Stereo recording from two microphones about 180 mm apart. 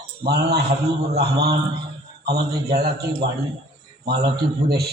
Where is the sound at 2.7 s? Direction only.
60° right (ahead or behind).